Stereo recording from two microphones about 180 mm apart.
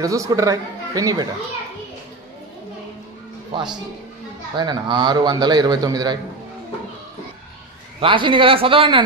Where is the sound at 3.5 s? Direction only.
25° right (ahead or behind).